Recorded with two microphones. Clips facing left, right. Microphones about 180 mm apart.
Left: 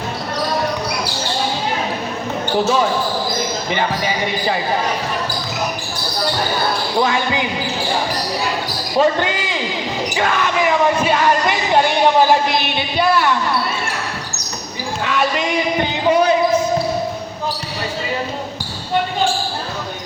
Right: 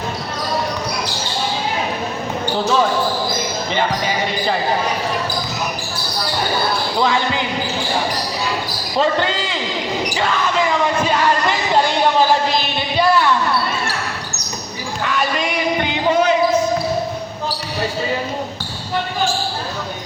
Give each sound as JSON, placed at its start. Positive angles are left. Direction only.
{"t": 7.0, "sound": "a man's voice", "side_deg": 15}
{"t": 9.0, "sound": "a man's voice", "side_deg": 15}
{"t": 11.0, "sound": "music", "side_deg": 15}